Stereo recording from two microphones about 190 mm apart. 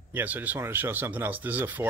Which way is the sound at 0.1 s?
10° right (ahead or behind).